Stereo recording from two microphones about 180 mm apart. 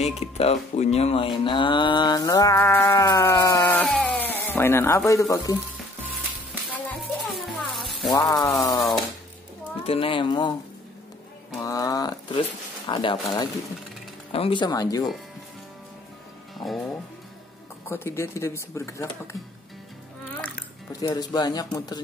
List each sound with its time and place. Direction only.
0.0 s speech: 35° left (ahead or behind); by 5.6 s 20° left (ahead or behind)
6.9 s music: 5° left (ahead or behind)
8.1 s speech: 20° left (ahead or behind)
9.8 s speech: 30° left (ahead or behind)
11.6 s speech: 20° left (ahead or behind)
16.5 s speech: centre (ahead or behind)
17.8 s speech: 15° left (ahead or behind)
21.0 s speech: 20° left (ahead or behind)